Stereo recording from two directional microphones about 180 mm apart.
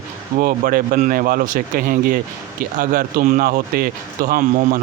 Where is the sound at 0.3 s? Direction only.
50° right (ahead or behind).